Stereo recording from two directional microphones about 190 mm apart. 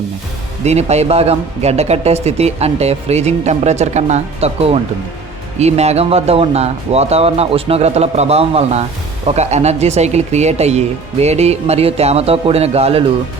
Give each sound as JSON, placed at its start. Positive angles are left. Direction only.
{"t": 0.6, "sound": "speech", "side_deg": -35}